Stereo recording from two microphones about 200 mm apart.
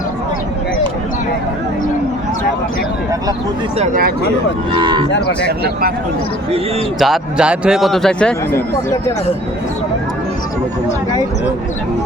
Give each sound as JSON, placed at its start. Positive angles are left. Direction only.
{"t": 4.7, "sound": "cattle", "side_deg": -25}
{"t": 5.5, "sound": "speech", "side_deg": -55}
{"t": 7.0, "sound": "speech", "side_deg": -5}